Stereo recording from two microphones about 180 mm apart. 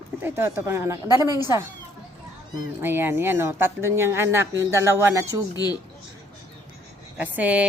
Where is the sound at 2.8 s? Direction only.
10° right (ahead or behind).